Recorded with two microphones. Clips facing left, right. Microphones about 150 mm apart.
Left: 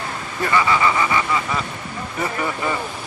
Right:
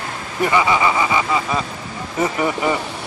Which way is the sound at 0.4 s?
20° right (ahead or behind).